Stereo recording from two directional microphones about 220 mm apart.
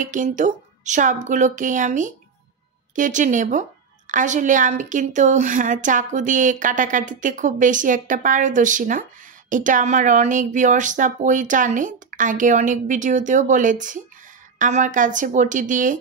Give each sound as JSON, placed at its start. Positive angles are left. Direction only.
{"t": 0.0, "sound": "a woman's voice", "side_deg": -35}